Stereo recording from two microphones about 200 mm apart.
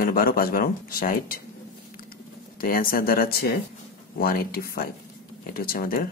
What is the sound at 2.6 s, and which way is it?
Speech, 45° left (ahead or behind).